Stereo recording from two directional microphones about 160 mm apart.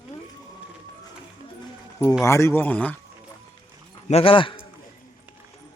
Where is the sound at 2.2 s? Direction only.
15° left (ahead or behind).